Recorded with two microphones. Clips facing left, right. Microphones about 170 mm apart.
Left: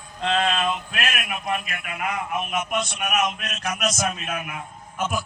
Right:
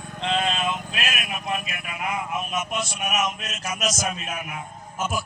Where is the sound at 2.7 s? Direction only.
55° left (ahead or behind).